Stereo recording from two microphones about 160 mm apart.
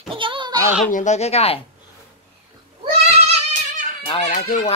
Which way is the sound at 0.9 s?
50° left (ahead or behind).